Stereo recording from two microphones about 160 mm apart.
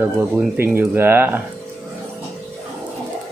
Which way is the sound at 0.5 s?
15° right (ahead or behind).